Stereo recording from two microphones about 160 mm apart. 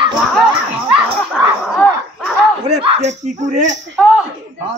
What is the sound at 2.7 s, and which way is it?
Speech, 40° right (ahead or behind).